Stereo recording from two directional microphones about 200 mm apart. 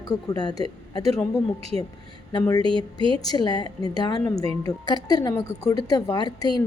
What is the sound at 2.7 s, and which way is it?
Speech, 25° right (ahead or behind).